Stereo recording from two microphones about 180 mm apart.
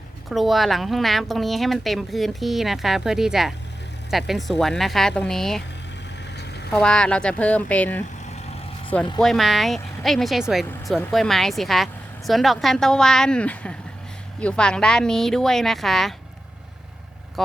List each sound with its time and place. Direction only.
0.3 s speech: centre (ahead or behind)
6.3 s vehicle: 65° left (ahead or behind)
6.7 s speech: 5° left (ahead or behind)
9.2 s speech: centre (ahead or behind)